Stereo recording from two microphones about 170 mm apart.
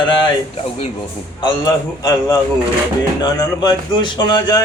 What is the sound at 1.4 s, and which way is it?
Speech, 20° left (ahead or behind).